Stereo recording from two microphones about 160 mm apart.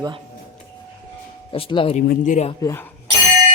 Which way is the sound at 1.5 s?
35° left (ahead or behind).